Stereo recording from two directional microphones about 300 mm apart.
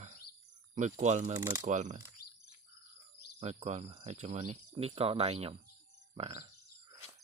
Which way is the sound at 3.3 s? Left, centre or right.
Right.